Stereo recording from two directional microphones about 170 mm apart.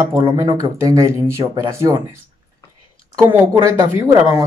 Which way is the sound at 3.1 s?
15° right (ahead or behind).